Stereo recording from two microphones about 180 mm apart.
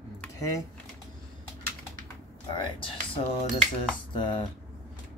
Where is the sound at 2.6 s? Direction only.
30° left (ahead or behind).